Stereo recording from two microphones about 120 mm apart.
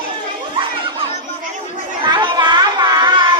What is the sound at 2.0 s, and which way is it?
Children playing, 40° right (ahead or behind).